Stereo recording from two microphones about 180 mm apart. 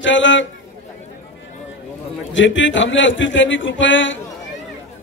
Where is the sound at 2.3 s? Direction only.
90° left.